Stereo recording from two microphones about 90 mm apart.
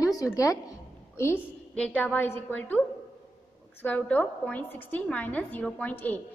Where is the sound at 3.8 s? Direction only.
15° left (ahead or behind).